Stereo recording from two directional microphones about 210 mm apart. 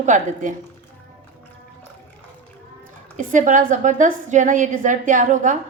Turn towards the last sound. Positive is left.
turn(degrees=-35)  # may be behind; listen again after turning